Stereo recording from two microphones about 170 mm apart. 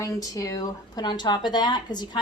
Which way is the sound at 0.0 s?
20° left (ahead or behind).